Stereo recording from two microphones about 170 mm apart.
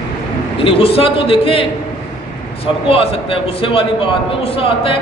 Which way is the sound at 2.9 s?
30° left (ahead or behind).